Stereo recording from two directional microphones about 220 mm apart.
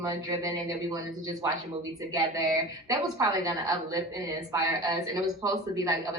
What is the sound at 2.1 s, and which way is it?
A woman's voice, 15° right (ahead or behind).